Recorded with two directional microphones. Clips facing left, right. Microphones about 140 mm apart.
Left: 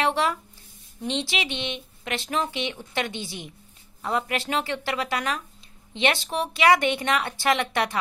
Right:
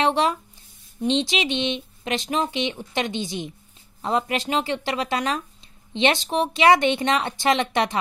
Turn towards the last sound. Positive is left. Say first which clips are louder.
# right 3 dB
turn(degrees=-20)  # may be behind; listen again after turning